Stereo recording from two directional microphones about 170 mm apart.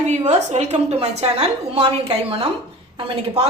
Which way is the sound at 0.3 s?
40° right (ahead or behind).